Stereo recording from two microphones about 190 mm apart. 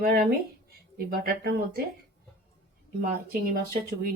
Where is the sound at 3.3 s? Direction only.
50° right (ahead or behind).